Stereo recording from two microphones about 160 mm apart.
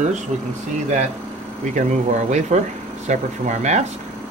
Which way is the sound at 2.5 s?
45° right (ahead or behind).